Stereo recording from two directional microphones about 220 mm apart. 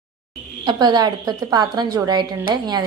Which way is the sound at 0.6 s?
20° right (ahead or behind).